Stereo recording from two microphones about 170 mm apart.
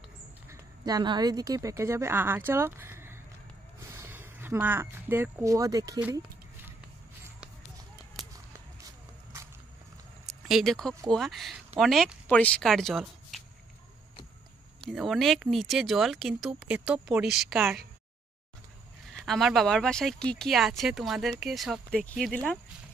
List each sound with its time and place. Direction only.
0.5 s a woman's voice: 20° right (ahead or behind)
8.2 s a sound: centre (ahead or behind)
10.2 s a sound: centre (ahead or behind)
11.1 s speech: centre (ahead or behind)
14.8 s speech: centre (ahead or behind)
19.2 s speech: centre (ahead or behind)